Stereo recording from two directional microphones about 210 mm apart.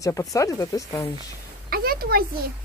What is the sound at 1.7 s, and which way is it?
Speech, 45° right (ahead or behind).